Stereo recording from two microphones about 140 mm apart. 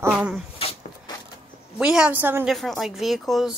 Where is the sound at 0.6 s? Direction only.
45° left (ahead or behind).